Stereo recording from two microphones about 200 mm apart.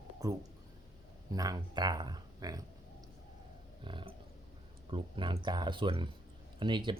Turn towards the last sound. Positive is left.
turn(degrees=-25)  # may be behind; listen again after turning